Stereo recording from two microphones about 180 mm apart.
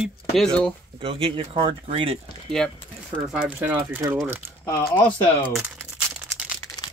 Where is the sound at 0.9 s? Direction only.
30° right (ahead or behind).